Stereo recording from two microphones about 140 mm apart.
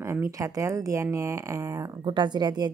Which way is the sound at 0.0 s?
20° right (ahead or behind).